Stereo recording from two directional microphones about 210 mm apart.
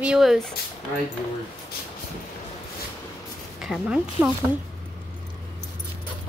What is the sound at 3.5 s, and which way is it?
Speech, centre (ahead or behind).